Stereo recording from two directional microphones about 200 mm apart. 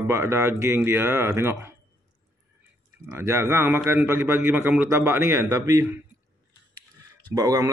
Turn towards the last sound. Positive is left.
turn(degrees=-15)  # may be behind; listen again after turning